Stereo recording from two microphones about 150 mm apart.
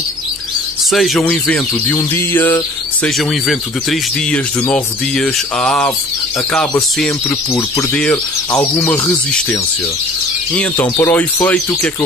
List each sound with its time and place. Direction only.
0.9 s speech: centre (ahead or behind)
3.2 s speech: centre (ahead or behind)
7.0 s speech: 10° left (ahead or behind)